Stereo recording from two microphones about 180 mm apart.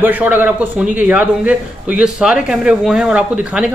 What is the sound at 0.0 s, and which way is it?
A man's voice, 10° right (ahead or behind).